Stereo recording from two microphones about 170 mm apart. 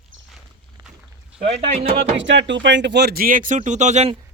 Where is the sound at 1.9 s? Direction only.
90° right; by 4.1 s 45° right (ahead or behind).